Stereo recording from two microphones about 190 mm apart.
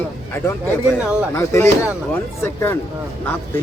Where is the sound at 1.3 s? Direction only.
15° left (ahead or behind).